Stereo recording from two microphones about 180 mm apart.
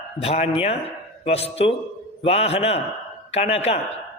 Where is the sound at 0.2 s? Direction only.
35° left (ahead or behind).